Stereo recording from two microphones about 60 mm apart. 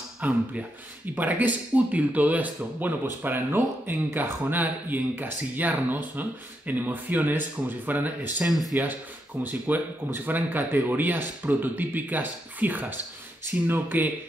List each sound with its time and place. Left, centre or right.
0.2 s speech: right
8.5 s speech: centre
9.4 s speech: right